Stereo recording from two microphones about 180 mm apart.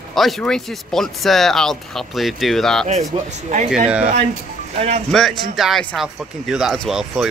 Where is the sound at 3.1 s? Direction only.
35° right (ahead or behind).